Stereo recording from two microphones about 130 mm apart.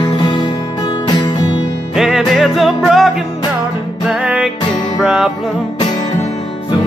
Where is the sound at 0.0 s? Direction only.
35° left (ahead or behind).